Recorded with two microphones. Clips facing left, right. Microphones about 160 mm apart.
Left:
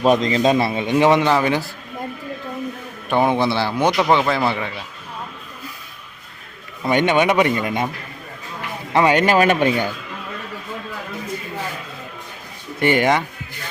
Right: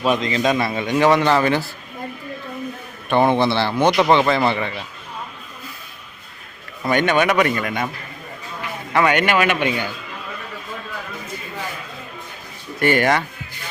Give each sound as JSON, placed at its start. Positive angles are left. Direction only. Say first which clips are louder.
{"t": 0.0, "sound": "a man's voice", "louder": "left 3 dB", "side_deg": 35}
{"t": 1.2, "sound": "speech", "louder": "right 1 dB", "side_deg": 10}
{"t": 3.1, "sound": "speech", "louder": "right 1 dB", "side_deg": 10}
{"t": 6.8, "sound": "speech", "louder": "left 1 dB", "side_deg": 20}
{"t": 8.9, "sound": "a man's voice", "louder": "left 2 dB", "side_deg": 30}
{"t": 12.8, "sound": "speech", "louder": "left 1 dB", "side_deg": 20}